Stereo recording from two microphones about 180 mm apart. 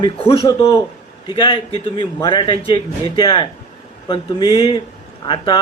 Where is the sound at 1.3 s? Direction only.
25° left (ahead or behind).